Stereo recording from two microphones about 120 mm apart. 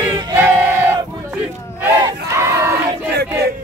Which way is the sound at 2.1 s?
25° right (ahead or behind).